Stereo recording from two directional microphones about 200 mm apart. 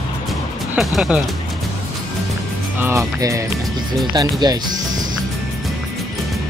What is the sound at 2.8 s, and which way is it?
Speech, 15° right (ahead or behind).